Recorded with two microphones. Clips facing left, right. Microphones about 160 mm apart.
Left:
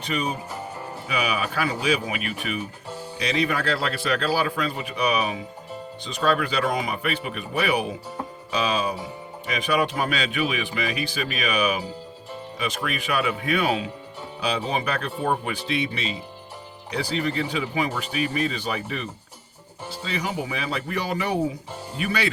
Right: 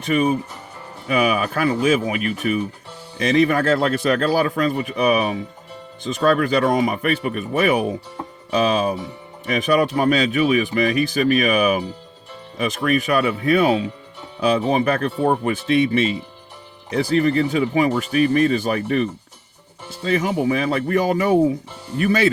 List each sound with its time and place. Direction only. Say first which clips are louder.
0.0 s a man's voice: right 9 dB; 50° right (ahead or behind)
20.1 s a man's voice: right 10 dB; 50° right (ahead or behind)